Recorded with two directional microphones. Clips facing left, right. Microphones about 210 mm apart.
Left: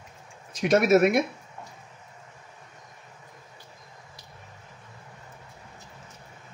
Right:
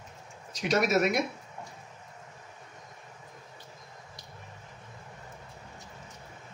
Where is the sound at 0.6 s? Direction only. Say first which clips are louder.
Left 6 dB; 55° left (ahead or behind).